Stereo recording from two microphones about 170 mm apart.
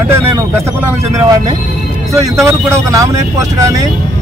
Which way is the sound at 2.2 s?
20° right (ahead or behind).